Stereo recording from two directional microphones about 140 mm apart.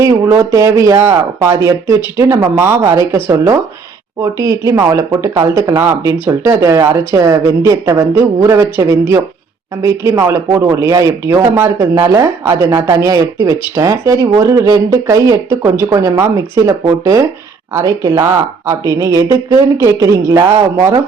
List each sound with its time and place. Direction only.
0.0 s speech: 20° right (ahead or behind)